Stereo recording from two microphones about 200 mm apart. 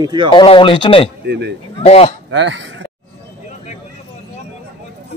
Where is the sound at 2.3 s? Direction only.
60° right (ahead or behind).